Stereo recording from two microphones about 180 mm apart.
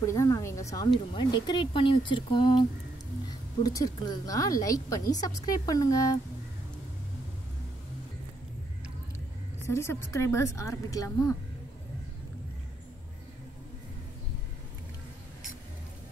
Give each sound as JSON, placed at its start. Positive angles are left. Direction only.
{"t": 0.0, "sound": "a woman's voice", "side_deg": 15}
{"t": 9.6, "sound": "a woman's voice", "side_deg": 15}